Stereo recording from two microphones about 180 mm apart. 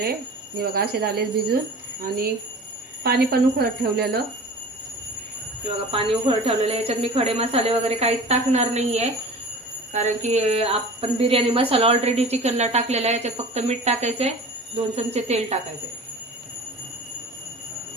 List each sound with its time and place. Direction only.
0.6 s speech: 60° right (ahead or behind)
5.9 s speech: 30° right (ahead or behind)